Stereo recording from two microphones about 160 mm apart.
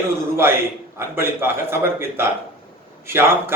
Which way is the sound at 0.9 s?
15° right (ahead or behind).